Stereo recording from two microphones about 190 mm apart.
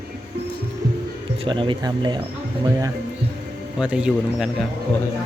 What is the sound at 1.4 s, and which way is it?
Speech, 25° right (ahead or behind).